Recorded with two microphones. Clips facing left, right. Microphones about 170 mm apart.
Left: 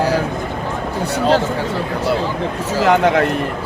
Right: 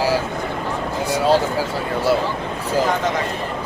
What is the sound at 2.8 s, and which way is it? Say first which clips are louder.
Speech: left 8 dB; 65° left (ahead or behind).